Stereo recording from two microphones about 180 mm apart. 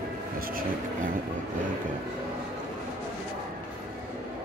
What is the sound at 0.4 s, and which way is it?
Speech, 55° right (ahead or behind).